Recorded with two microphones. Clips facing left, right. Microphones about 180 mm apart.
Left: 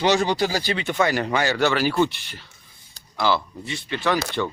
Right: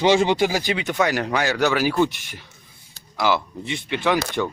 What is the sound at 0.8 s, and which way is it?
Speech, centre (ahead or behind).